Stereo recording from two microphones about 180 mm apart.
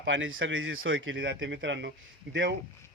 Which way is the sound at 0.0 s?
90° right.